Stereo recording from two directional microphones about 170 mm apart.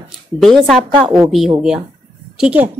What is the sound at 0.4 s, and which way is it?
Speech, centre (ahead or behind).